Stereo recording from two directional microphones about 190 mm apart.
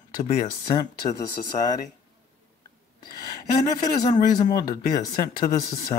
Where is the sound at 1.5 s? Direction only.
35° left (ahead or behind).